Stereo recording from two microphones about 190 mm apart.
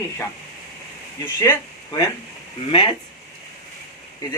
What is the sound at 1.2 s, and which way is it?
Speech, 15° left (ahead or behind).